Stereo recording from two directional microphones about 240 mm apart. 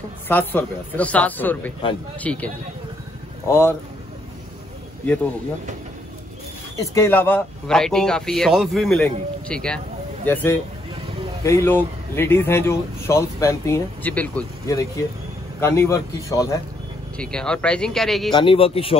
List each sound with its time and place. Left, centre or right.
0.3 s a man's voice: centre
5.0 s speech: centre
6.9 s a man's voice: centre
18.3 s a man's voice: left